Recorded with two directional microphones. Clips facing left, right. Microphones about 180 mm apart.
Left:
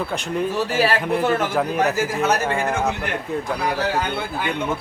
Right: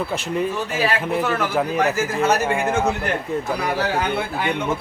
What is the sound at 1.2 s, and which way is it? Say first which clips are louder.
Speech: left 2 dB; 30° left (ahead or behind).